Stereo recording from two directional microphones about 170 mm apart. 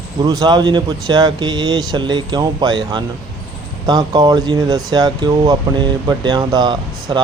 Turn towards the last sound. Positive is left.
turn(degrees=-25)  # may be behind; listen again after turning